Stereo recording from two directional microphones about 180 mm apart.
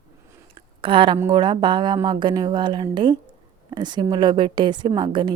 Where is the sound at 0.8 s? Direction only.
30° right (ahead or behind).